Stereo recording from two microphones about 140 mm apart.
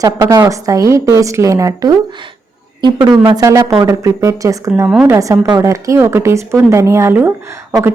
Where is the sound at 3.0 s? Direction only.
30° right (ahead or behind).